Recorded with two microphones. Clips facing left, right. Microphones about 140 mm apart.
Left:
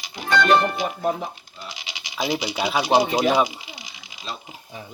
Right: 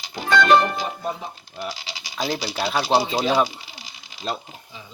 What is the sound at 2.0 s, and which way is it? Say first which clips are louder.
Speech: left 1 dB; 15° left (ahead or behind).